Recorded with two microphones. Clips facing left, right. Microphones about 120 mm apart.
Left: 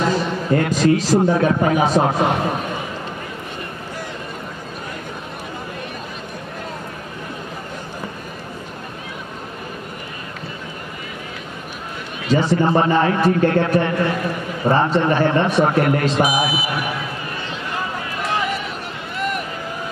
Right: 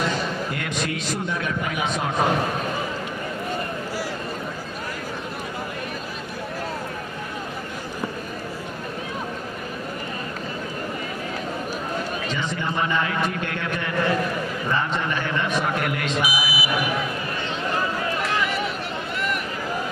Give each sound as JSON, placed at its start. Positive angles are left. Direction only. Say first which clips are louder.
{"t": 0.5, "sound": "speech", "louder": "left 12 dB", "side_deg": 35}
{"t": 12.3, "sound": "speech", "louder": "left 10 dB", "side_deg": 40}